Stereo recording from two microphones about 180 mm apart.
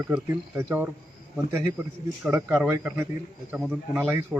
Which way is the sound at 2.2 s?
10° right (ahead or behind).